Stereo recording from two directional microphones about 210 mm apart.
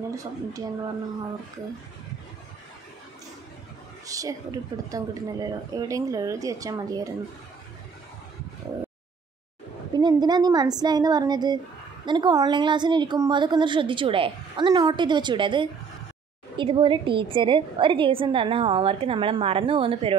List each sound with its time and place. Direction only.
0.1 s speech: 15° right (ahead or behind)
4.0 s speech: 15° right (ahead or behind)
9.9 s a woman's voice: 20° right (ahead or behind)